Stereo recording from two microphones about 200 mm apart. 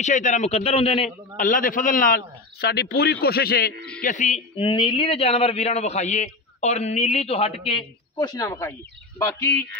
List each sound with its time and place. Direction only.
0.0 s speech: 35° left (ahead or behind)
1.3 s a man's voice: 40° left (ahead or behind)
4.0 s speech: 40° left (ahead or behind); by 9.8 s 10° left (ahead or behind)